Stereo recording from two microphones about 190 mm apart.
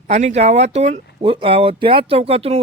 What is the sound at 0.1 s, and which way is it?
Speech, 35° right (ahead or behind).